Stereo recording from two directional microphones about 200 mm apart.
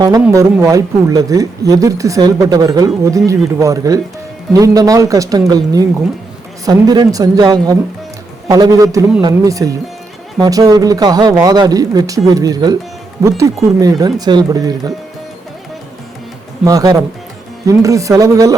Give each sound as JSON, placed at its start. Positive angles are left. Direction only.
{"t": 0.0, "sound": "speech", "side_deg": -15}
{"t": 16.6, "sound": "speech", "side_deg": -15}